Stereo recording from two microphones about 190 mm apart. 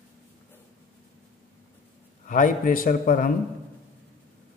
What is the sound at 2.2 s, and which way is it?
A man's voice, 45° left (ahead or behind).